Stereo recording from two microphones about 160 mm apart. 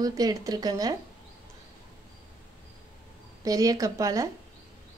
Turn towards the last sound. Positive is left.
turn(degrees=-20)  # may be behind; listen again after turning